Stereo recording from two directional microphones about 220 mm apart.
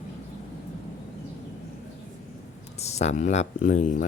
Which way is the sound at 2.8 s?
30° left (ahead or behind).